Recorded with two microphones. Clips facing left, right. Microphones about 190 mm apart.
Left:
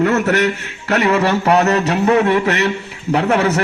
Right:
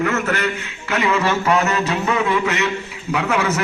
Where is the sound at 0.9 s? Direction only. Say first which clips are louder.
Left 4 dB; 40° left (ahead or behind).